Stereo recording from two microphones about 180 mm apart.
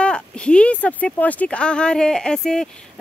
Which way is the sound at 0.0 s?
5° left (ahead or behind).